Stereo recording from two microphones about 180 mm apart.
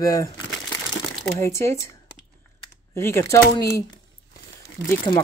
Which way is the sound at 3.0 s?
15° left (ahead or behind).